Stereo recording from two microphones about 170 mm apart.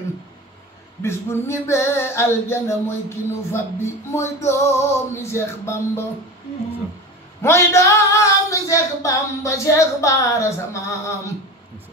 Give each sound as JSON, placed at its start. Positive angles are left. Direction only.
{"t": 1.0, "sound": "female singing", "side_deg": 15}
{"t": 7.4, "sound": "female singing", "side_deg": 15}